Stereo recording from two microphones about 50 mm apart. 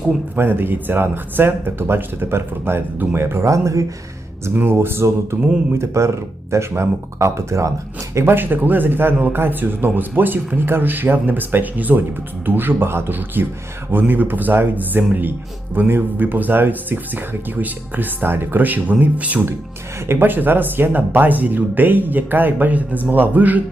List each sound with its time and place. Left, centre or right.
0.3 s speech: right
3.2 s speech: right
4.5 s speech: right
5.8 s speech: right
8.2 s speech: right
20.1 s speech: right